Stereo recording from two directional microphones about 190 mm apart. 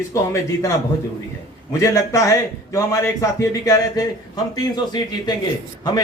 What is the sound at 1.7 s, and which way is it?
A man's voice, 15° left (ahead or behind).